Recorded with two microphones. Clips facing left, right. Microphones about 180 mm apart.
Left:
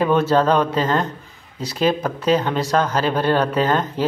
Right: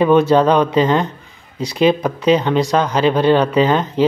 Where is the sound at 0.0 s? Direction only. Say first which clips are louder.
Right 5 dB; 15° right (ahead or behind).